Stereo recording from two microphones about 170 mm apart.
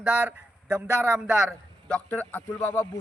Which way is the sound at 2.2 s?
10° left (ahead or behind).